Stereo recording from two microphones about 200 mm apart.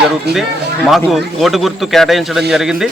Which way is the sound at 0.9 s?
Centre (ahead or behind).